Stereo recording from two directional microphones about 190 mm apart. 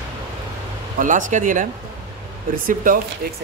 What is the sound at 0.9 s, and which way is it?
Speech, 40° right (ahead or behind).